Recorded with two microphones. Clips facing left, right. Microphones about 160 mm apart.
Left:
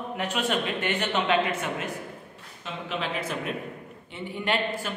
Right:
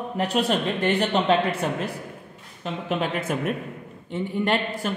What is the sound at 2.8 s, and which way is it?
A man's voice, 50° right (ahead or behind).